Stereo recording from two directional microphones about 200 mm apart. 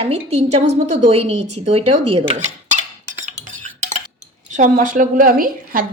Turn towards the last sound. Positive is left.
turn(degrees=-45)  # may be behind; listen again after turning